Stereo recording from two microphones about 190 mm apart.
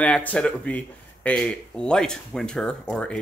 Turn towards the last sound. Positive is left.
turn(degrees=5)  # may be behind; listen again after turning